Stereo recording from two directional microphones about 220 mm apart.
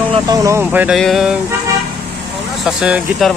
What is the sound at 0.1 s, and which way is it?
Speech, 15° right (ahead or behind).